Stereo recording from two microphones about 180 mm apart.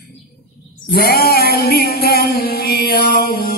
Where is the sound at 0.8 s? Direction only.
60° left (ahead or behind).